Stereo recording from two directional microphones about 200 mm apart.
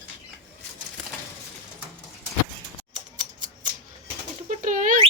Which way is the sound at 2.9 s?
40° right (ahead or behind).